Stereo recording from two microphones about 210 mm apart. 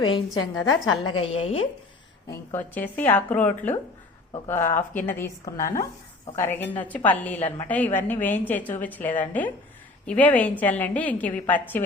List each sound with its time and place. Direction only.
0.0 s a woman's voice: 20° left (ahead or behind)
2.3 s a woman's voice: 10° left (ahead or behind)